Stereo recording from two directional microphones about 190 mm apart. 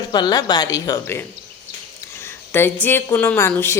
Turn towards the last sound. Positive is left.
turn(degrees=15)  # may be behind; listen again after turning